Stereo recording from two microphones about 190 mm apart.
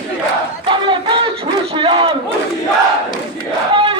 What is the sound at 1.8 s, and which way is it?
Battle cry, 25° right (ahead or behind).